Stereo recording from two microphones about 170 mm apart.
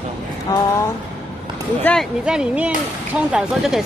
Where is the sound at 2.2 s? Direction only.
5° right (ahead or behind).